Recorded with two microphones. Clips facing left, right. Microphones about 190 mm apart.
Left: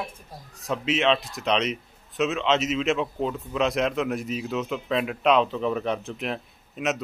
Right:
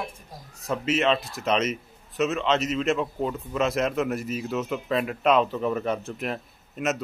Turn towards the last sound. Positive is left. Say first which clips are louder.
# even
turn(degrees=0)  # may be behind; listen again after turning